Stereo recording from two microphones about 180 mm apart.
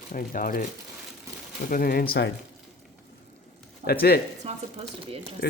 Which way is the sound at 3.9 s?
60° left (ahead or behind).